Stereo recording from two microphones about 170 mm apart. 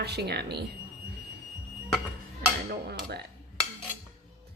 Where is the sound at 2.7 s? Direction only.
65° right (ahead or behind).